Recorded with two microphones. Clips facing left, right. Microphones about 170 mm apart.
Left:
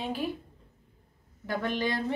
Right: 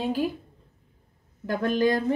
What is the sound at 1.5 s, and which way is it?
Speech, 45° right (ahead or behind).